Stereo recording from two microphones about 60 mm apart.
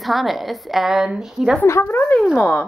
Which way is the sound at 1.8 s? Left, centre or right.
Left.